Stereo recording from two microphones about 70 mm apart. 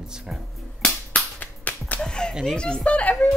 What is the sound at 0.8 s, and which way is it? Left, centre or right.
Whip, centre.